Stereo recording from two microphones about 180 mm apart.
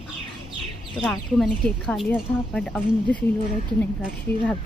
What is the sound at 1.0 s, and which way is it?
A woman's voice, centre (ahead or behind).